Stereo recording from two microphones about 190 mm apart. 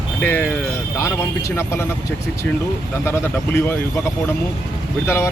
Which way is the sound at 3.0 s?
15° left (ahead or behind).